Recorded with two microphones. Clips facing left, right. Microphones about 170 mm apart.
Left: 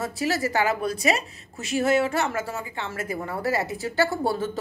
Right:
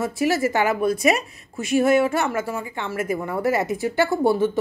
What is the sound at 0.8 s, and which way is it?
Speech, 35° left (ahead or behind).